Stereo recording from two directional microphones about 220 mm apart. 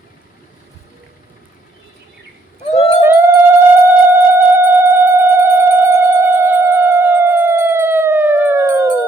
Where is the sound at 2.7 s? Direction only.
30° left (ahead or behind).